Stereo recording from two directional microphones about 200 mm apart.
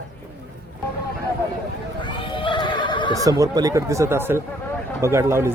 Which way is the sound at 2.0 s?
25° left (ahead or behind).